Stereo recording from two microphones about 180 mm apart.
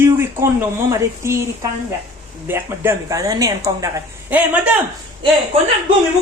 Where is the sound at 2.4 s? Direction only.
15° right (ahead or behind).